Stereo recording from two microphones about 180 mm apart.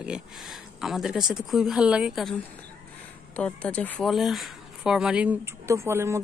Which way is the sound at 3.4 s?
5° left (ahead or behind).